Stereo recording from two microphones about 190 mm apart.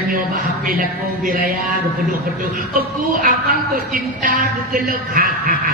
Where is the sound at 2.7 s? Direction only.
45° right (ahead or behind).